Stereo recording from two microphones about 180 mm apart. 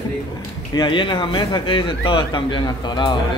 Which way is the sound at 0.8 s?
25° left (ahead or behind).